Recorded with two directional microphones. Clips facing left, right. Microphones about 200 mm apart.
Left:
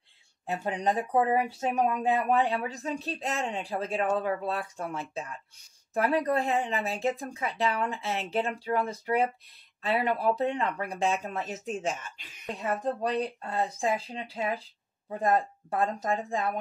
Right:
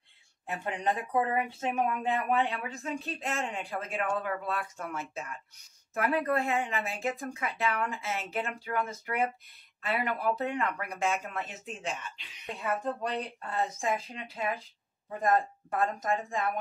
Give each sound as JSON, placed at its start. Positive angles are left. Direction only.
{"t": 0.5, "sound": "speech", "side_deg": 35}